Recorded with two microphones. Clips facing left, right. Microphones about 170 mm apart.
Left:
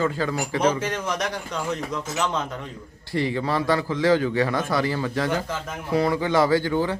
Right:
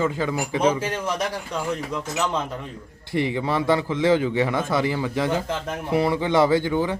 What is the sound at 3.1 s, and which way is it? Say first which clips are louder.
Speech: right 1 dB; 20° right (ahead or behind).